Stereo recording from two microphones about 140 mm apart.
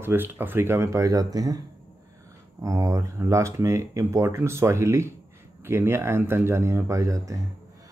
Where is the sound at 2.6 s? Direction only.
20° right (ahead or behind).